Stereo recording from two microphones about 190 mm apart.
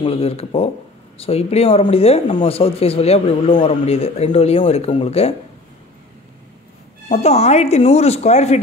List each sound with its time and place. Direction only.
0.0 s speech: 30° left (ahead or behind)
7.1 s speech: 35° left (ahead or behind)